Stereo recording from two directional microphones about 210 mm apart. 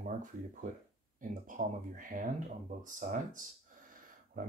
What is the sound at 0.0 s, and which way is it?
Speech, 40° right (ahead or behind).